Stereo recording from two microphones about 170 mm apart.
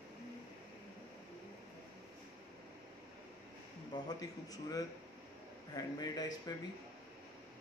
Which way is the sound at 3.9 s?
20° left (ahead or behind).